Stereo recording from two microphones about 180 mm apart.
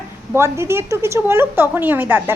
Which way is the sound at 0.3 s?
15° right (ahead or behind).